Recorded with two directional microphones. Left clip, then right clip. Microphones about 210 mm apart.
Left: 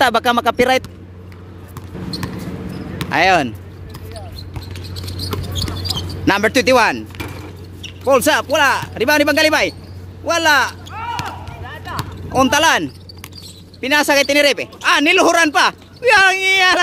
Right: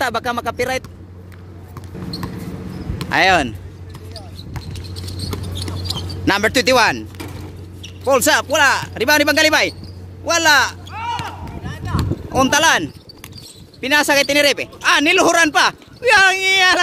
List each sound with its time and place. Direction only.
0.0 s speech: 15° left (ahead or behind)
3.0 s speech: 5° left (ahead or behind)
4.7 s rodents: 15° right (ahead or behind)
5.6 s a sound: 5° right (ahead or behind)
6.2 s speech: 5° left (ahead or behind)
10.9 s a sound: 45° left (ahead or behind)
11.6 s basketball bounce: 35° left (ahead or behind)
12.3 s speech: 5° left (ahead or behind)